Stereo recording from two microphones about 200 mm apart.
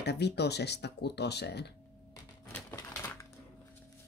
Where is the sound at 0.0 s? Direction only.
55° left (ahead or behind).